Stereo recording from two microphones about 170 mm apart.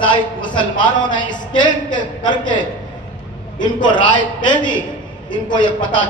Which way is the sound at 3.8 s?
30° left (ahead or behind).